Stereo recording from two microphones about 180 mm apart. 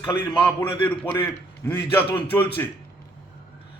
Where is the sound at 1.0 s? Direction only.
10° left (ahead or behind).